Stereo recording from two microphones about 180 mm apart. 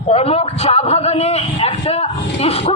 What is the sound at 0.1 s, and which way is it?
A man's voice, 35° left (ahead or behind).